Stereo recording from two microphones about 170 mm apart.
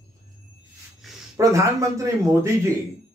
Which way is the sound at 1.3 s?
20° right (ahead or behind).